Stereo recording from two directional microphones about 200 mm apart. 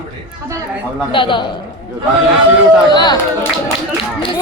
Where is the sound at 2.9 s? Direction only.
20° left (ahead or behind).